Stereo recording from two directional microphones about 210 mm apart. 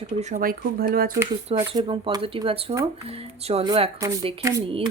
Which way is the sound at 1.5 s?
20° right (ahead or behind).